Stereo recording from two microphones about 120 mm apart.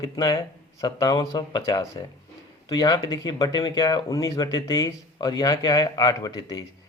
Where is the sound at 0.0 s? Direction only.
30° left (ahead or behind).